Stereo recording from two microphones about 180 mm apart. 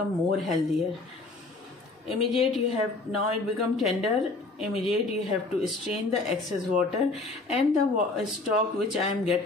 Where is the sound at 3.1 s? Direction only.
Centre (ahead or behind).